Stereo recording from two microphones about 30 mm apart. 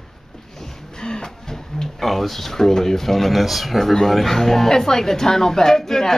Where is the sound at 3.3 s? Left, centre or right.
Centre.